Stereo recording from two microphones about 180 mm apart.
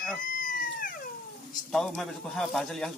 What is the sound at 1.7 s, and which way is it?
Speech, centre (ahead or behind).